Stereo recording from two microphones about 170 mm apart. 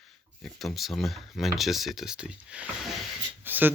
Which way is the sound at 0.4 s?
Centre (ahead or behind).